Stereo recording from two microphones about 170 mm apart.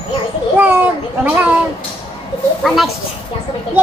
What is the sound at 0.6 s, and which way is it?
Speech, 10° right (ahead or behind).